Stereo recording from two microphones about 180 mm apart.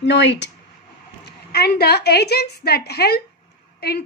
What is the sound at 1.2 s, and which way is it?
A woman's voice, 60° left (ahead or behind).